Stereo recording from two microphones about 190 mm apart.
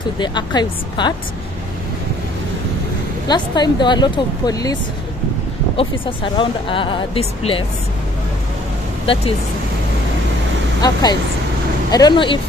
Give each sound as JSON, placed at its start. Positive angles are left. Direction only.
{"t": 0.2, "sound": "speech", "side_deg": 25}
{"t": 3.3, "sound": "speech", "side_deg": 20}
{"t": 5.8, "sound": "speech", "side_deg": 25}
{"t": 9.0, "sound": "speech", "side_deg": 30}
{"t": 10.8, "sound": "speech", "side_deg": 20}